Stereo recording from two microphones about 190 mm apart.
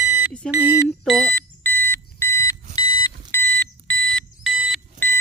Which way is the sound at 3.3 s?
10° left (ahead or behind).